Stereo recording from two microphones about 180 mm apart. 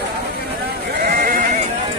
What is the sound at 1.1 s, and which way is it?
Sheep, 50° right (ahead or behind).